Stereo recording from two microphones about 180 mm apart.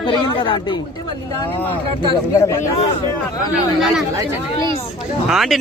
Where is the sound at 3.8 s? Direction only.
Centre (ahead or behind).